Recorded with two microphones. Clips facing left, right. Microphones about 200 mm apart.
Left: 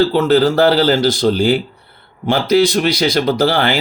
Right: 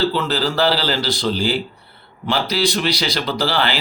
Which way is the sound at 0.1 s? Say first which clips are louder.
Left 9 dB; 50° left (ahead or behind).